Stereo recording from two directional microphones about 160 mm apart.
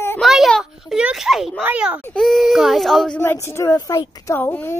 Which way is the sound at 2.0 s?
5° left (ahead or behind).